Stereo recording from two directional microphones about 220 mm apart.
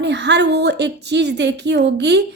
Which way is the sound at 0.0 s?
50° right (ahead or behind).